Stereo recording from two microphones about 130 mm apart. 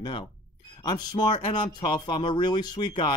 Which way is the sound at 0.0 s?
35° left (ahead or behind).